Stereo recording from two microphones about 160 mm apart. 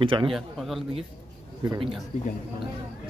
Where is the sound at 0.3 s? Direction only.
Centre (ahead or behind).